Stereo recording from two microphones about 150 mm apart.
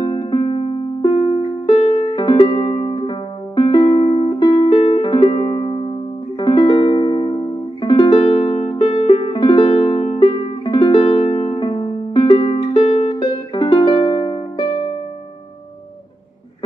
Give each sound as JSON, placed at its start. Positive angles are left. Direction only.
{"t": 0.2, "sound": "music", "side_deg": 30}
{"t": 4.7, "sound": "music", "side_deg": 40}